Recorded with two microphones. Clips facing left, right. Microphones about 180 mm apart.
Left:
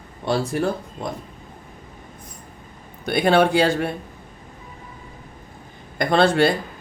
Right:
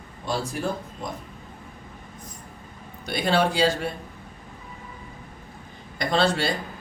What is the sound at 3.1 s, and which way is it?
Speech, 60° left (ahead or behind).